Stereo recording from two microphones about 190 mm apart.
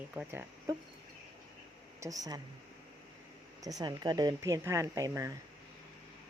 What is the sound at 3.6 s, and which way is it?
Speech, 20° right (ahead or behind).